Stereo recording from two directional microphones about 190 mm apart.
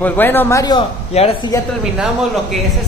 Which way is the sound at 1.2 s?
35° left (ahead or behind).